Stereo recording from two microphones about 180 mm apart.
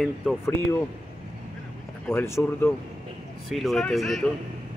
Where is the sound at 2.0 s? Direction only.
15° left (ahead or behind).